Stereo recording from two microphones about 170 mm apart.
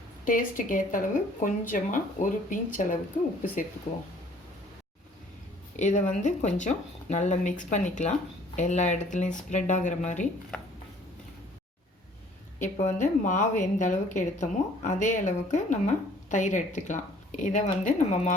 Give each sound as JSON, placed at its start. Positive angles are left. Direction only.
{"t": 0.3, "sound": "a woman's voice", "side_deg": 55}
{"t": 5.7, "sound": "a woman's voice", "side_deg": 45}
{"t": 12.6, "sound": "a woman's voice", "side_deg": 45}